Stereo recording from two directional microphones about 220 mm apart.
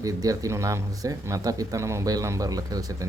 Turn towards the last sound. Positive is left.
turn(degrees=-15)  # may be behind; listen again after turning